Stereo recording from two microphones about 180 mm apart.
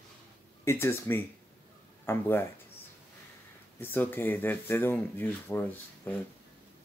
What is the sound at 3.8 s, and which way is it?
Speech, 10° left (ahead or behind).